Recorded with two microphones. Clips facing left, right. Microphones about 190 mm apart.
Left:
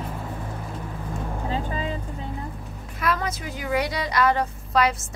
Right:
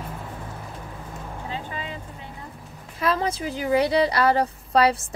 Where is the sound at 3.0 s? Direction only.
30° right (ahead or behind).